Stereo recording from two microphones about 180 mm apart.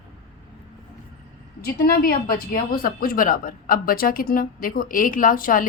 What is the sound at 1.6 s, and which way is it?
A woman's voice, 55° left (ahead or behind).